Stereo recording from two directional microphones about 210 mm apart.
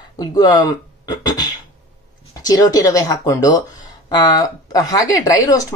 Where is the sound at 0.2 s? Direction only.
20° left (ahead or behind).